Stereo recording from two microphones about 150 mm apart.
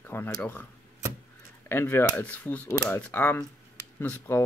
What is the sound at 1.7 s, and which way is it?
Speech, 15° left (ahead or behind).